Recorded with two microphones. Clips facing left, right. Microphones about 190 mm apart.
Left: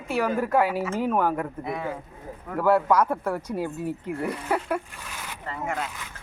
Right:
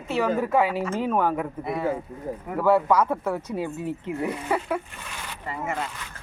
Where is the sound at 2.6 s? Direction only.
10° left (ahead or behind).